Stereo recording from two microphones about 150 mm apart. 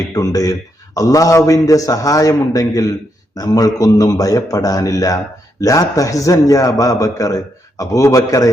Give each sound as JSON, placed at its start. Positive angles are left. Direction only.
{"t": 0.1, "sound": "a man's voice", "side_deg": 25}